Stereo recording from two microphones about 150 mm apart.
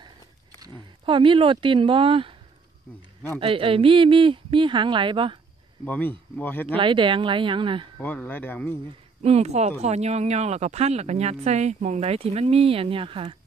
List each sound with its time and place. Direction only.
0.6 s speech: 35° right (ahead or behind)
3.3 s a woman's voice: 35° right (ahead or behind)
5.9 s speech: 10° left (ahead or behind)
6.8 s a woman's voice: 35° right (ahead or behind)
8.0 s speech: 10° left (ahead or behind)
9.2 s speech: 45° right (ahead or behind)